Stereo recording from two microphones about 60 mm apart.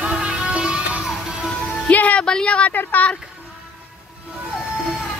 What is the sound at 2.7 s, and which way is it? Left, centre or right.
Speech, left.